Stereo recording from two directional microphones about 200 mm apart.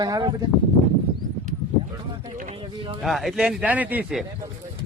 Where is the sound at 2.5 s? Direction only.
25° right (ahead or behind).